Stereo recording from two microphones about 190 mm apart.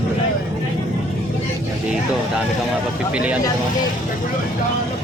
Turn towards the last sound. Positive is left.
turn(degrees=-5)  # may be behind; listen again after turning